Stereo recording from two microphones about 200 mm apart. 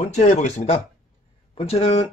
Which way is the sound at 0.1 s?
35° left (ahead or behind).